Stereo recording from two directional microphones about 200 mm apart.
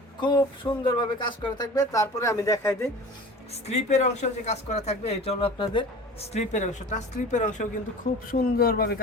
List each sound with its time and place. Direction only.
0.2 s a sound: 25° left (ahead or behind)
1.2 s speech: 20° left (ahead or behind)
3.5 s speech: 35° left (ahead or behind)
6.3 s speech: 35° left (ahead or behind)